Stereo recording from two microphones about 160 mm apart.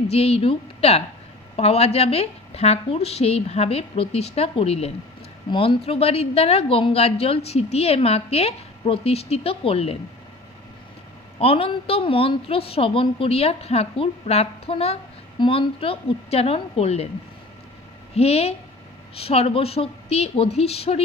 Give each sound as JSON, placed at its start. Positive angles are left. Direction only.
{"t": 0.1, "sound": "a woman's voice", "side_deg": 40}
{"t": 11.3, "sound": "a woman's voice", "side_deg": 35}
{"t": 18.1, "sound": "a woman's voice", "side_deg": 40}